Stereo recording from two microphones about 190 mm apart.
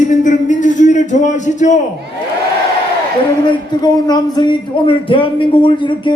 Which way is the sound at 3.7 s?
20° left (ahead or behind).